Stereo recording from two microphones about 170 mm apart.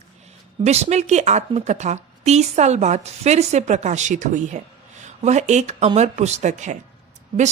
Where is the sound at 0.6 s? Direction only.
40° right (ahead or behind).